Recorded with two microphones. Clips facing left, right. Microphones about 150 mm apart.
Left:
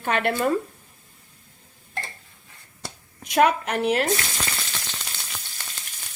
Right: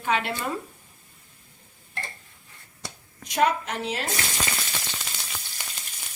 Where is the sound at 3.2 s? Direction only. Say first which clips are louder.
Left 4 dB; 65° left (ahead or behind).